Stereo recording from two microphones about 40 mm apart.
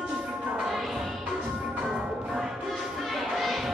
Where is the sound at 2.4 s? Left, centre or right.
Centre.